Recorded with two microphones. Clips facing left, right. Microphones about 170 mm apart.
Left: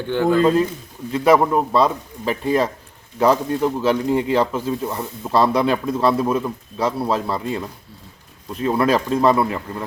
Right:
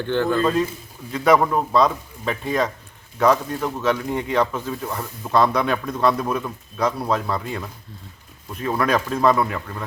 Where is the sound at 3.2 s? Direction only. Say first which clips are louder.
Left 2 dB; 30° left (ahead or behind).